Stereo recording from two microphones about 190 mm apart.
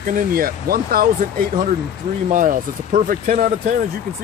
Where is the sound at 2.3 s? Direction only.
45° right (ahead or behind).